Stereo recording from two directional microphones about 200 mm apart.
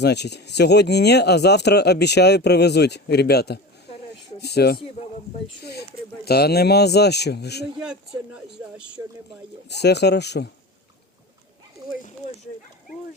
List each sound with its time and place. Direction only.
0.0 s speech: 55° left (ahead or behind)
6.2 s speech: 50° left (ahead or behind)
7.8 s speech: 5° right (ahead or behind)
9.6 s speech: 55° left (ahead or behind)